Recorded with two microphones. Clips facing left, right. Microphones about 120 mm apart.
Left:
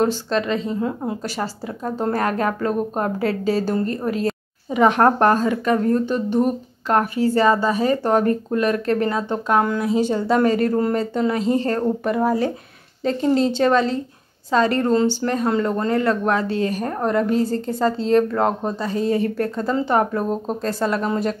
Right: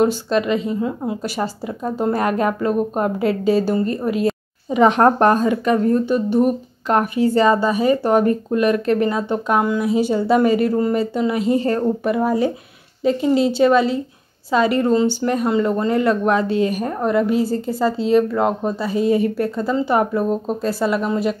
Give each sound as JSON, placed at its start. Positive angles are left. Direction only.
{"t": 0.0, "sound": "speech", "side_deg": -15}
{"t": 0.7, "sound": "speech", "side_deg": -5}
{"t": 1.2, "sound": "a woman's voice", "side_deg": -15}
{"t": 13.0, "sound": "speech", "side_deg": -5}